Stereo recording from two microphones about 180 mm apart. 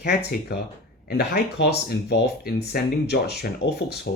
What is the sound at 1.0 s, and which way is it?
Speech, 60° left (ahead or behind).